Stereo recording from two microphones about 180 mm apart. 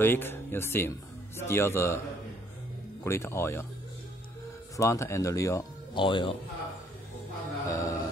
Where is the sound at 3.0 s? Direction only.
15° left (ahead or behind).